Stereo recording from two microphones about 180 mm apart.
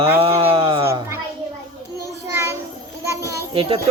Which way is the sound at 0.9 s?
15° right (ahead or behind).